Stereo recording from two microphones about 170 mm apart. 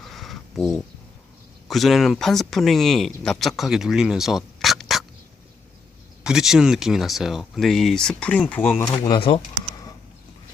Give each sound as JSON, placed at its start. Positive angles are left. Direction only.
{"t": 0.0, "sound": "a sound", "side_deg": 0}
{"t": 1.6, "sound": "speech", "side_deg": 0}
{"t": 6.2, "sound": "speech", "side_deg": -5}
{"t": 9.0, "sound": "speech", "side_deg": 30}